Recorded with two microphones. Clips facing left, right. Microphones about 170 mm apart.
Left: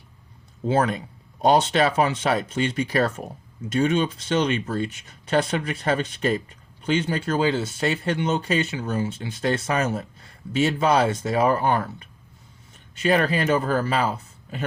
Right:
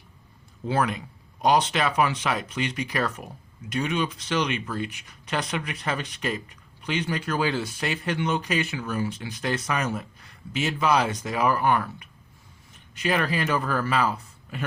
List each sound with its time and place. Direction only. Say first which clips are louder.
0.6 s speech: left 4 dB; 25° left (ahead or behind)